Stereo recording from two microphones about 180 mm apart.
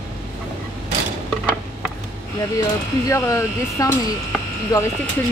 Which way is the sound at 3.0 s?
15° left (ahead or behind).